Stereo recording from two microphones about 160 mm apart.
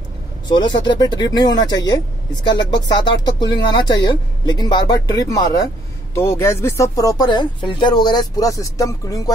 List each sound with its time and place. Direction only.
0.5 s speech: 25° left (ahead or behind)